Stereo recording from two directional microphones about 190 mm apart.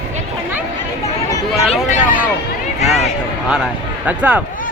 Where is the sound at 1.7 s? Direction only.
40° left (ahead or behind).